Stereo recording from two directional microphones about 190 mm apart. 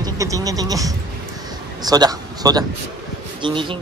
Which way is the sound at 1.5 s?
20° right (ahead or behind).